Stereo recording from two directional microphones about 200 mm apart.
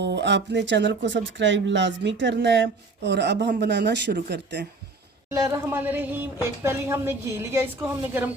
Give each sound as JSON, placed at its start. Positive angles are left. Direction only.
{"t": 0.0, "sound": "speech", "side_deg": -60}
{"t": 5.3, "sound": "speech", "side_deg": -15}